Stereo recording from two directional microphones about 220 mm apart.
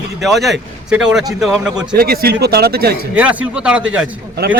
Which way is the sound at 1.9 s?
45° right (ahead or behind).